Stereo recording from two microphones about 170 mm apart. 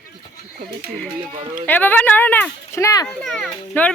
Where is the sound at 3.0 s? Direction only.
Centre (ahead or behind).